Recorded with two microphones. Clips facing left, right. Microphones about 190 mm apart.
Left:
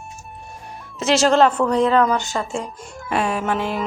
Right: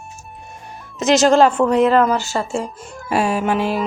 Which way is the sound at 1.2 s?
5° right (ahead or behind).